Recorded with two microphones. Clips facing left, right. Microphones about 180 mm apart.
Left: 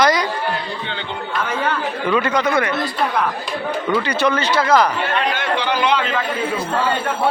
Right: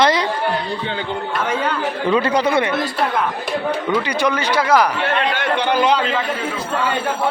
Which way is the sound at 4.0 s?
15° right (ahead or behind).